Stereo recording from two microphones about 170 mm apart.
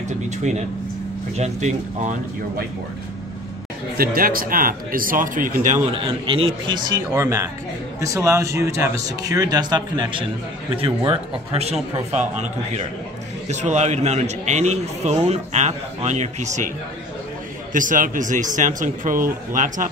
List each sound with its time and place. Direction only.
1.3 s speech: 40° right (ahead or behind)
4.0 s speech: 60° right (ahead or behind)
5.9 s speech: 30° right (ahead or behind)
7.1 s a man's voice: 15° right (ahead or behind); by 16.7 s 45° right (ahead or behind)
17.7 s speech: 50° right (ahead or behind)